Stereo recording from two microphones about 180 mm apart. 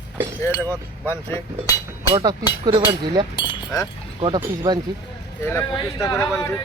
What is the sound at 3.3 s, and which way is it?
Chink, 25° left (ahead or behind).